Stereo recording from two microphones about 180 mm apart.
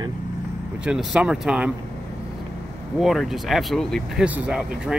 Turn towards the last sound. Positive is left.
turn(degrees=-5)  # may be behind; listen again after turning